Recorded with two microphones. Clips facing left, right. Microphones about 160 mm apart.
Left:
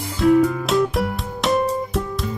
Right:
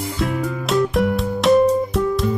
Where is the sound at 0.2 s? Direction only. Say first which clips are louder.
Left 9 dB; centre (ahead or behind).